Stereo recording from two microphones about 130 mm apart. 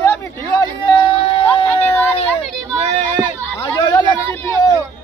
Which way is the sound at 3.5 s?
20° left (ahead or behind).